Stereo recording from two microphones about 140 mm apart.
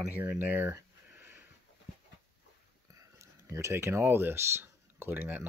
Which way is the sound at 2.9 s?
20° right (ahead or behind).